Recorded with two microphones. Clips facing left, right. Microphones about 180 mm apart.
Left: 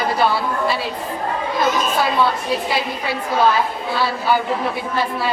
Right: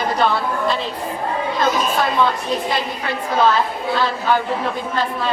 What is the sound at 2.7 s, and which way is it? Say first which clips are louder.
A woman's voice: even; 5° left (ahead or behind).